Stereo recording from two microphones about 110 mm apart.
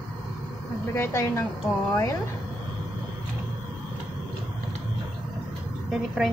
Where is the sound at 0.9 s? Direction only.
25° left (ahead or behind).